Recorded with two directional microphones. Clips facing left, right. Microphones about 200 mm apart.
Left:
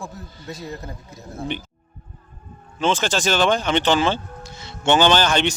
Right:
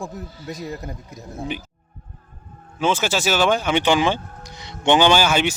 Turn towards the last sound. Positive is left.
turn(degrees=-5)  # may be behind; listen again after turning